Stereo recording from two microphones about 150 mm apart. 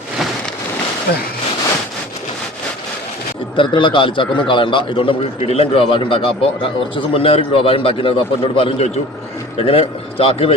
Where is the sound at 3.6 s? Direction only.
35° left (ahead or behind).